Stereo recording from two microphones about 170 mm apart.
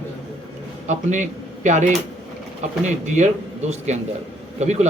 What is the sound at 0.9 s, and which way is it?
A man's voice, 45° right (ahead or behind).